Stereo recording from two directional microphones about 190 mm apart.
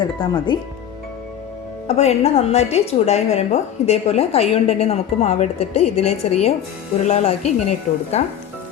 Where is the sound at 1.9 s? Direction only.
35° left (ahead or behind).